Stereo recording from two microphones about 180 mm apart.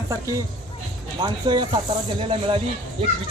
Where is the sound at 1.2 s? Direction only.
25° right (ahead or behind).